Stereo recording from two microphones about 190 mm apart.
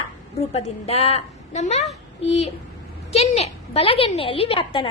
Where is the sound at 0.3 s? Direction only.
35° left (ahead or behind).